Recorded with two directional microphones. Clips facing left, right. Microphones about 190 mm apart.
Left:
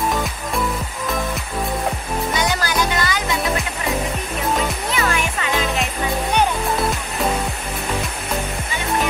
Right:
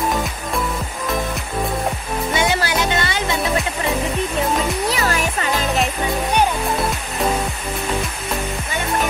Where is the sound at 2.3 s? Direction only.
25° right (ahead or behind).